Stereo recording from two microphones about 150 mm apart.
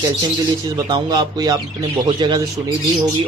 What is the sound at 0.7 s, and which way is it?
Speech, 25° right (ahead or behind).